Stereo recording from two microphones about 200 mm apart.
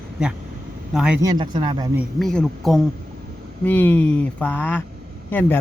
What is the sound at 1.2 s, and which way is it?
Speech, 20° right (ahead or behind).